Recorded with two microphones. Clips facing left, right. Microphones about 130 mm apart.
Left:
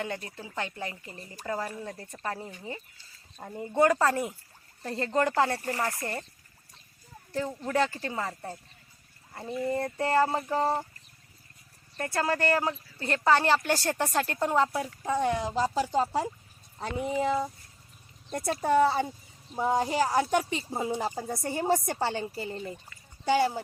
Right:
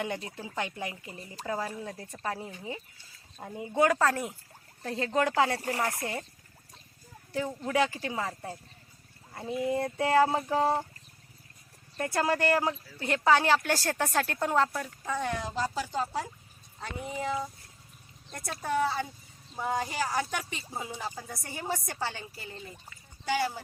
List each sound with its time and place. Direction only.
0.0 s speech: 20° right (ahead or behind)
7.5 s speech: 5° right (ahead or behind)
11.9 s speech: 10° right (ahead or behind)
14.7 s speech: 20° left (ahead or behind)